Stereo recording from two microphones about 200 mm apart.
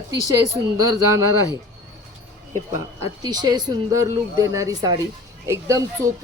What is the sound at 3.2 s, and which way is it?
Speech, 20° right (ahead or behind).